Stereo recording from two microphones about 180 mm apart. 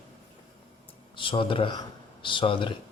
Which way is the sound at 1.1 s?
30° left (ahead or behind).